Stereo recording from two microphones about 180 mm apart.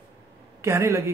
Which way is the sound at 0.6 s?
15° right (ahead or behind).